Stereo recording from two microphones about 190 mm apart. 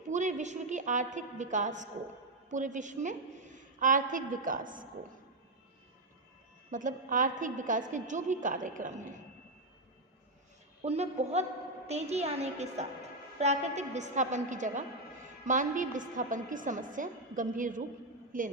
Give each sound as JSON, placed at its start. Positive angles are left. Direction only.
{"t": 0.1, "sound": "a woman's voice", "side_deg": -40}
{"t": 6.7, "sound": "a woman's voice", "side_deg": -45}
{"t": 10.8, "sound": "a woman's voice", "side_deg": -35}